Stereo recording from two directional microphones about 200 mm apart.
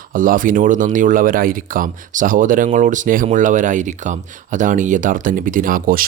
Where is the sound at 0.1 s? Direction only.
45° right (ahead or behind).